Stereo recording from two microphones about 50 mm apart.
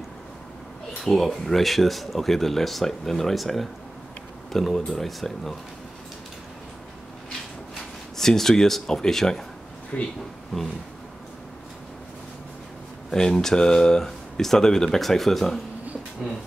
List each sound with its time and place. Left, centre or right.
1.0 s speech: centre
8.2 s speech: centre
9.9 s speech: left
13.1 s speech: centre